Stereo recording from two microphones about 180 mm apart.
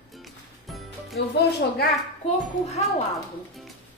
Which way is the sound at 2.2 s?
35° left (ahead or behind).